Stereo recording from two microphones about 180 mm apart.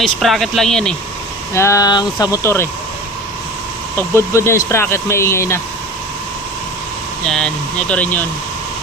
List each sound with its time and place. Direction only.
0.0 s speech: centre (ahead or behind)
1.5 s speech: 15° left (ahead or behind)
3.9 s speech: 15° left (ahead or behind)
7.3 s speech: 5° left (ahead or behind)